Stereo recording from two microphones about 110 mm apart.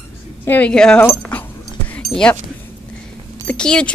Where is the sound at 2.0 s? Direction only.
5° left (ahead or behind).